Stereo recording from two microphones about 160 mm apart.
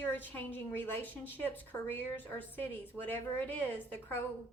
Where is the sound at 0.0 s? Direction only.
10° left (ahead or behind).